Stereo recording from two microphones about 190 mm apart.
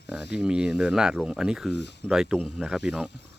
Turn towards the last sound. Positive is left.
turn(degrees=0)  # may be behind; listen again after turning